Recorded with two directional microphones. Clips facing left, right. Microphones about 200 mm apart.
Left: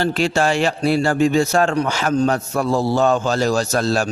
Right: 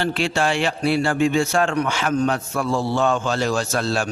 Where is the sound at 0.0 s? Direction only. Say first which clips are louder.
Left 3 dB; 40° left (ahead or behind).